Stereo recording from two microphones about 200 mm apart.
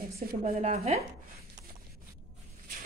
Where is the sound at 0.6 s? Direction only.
35° right (ahead or behind).